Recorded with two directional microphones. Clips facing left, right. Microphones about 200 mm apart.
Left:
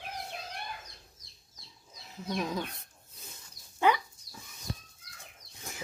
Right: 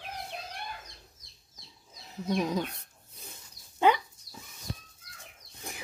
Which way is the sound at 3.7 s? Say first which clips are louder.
Right 2 dB; 20° right (ahead or behind).